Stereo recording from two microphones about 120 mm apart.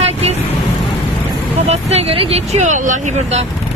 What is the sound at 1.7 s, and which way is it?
Speech, 60° right (ahead or behind).